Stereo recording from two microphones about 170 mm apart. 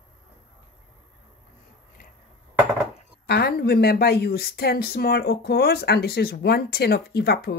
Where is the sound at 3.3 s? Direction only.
70° left (ahead or behind).